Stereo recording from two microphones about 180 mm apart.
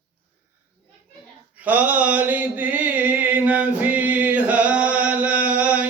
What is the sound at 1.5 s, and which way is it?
Mantra, 10° right (ahead or behind).